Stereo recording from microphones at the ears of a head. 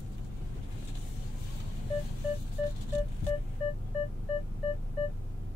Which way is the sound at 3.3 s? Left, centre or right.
Left.